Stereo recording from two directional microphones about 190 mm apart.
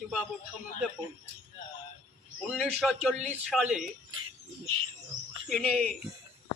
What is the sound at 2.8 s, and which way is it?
Speech, centre (ahead or behind).